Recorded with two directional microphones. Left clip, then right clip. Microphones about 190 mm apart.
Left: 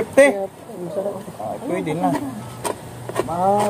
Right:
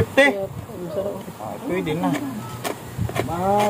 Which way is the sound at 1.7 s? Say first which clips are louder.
Left 2 dB; 10° right (ahead or behind).